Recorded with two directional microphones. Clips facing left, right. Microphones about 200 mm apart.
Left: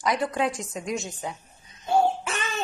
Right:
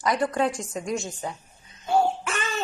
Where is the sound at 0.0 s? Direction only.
Centre (ahead or behind).